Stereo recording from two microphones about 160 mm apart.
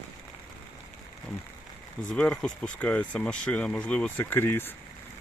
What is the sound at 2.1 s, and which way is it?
Speech, 5° left (ahead or behind).